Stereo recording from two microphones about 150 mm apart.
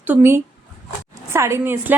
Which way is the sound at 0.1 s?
15° right (ahead or behind).